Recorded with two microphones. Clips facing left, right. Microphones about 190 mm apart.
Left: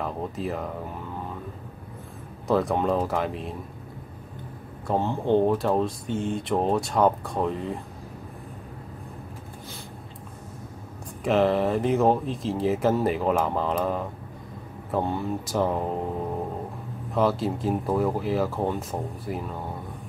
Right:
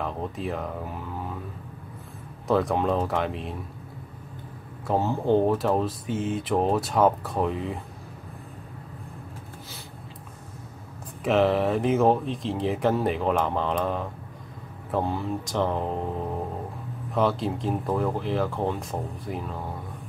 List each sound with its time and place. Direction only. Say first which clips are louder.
0.0 s speech: left 1 dB; centre (ahead or behind)
2.4 s speech: even; centre (ahead or behind)
4.8 s speech: right 1 dB; centre (ahead or behind)
11.2 s speech: even; centre (ahead or behind)
17.1 s speech: left 1 dB; centre (ahead or behind)